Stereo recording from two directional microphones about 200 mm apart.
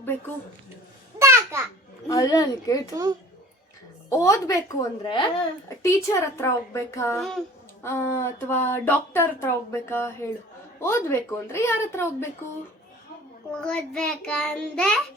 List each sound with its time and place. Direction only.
1.2 s a sound: 15° right (ahead or behind)
2.0 s a woman's voice: 20° left (ahead or behind)
2.9 s a child's voice: 20° right (ahead or behind)
4.1 s a woman's voice: 15° left (ahead or behind)
7.2 s child singing: centre (ahead or behind)
7.8 s a woman's voice: 15° left (ahead or behind)
13.5 s child singing: 5° left (ahead or behind)